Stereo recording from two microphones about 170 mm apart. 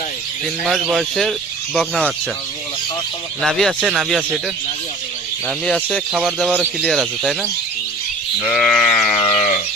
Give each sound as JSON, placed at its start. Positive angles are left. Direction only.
{"t": 0.6, "sound": "speech", "side_deg": 0}
{"t": 3.4, "sound": "speech", "side_deg": 0}
{"t": 5.5, "sound": "speech", "side_deg": 5}
{"t": 8.4, "sound": "speech", "side_deg": 0}
{"t": 9.2, "sound": "sheep", "side_deg": 35}